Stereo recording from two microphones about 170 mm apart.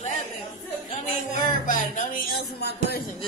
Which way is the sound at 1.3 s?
50° left (ahead or behind).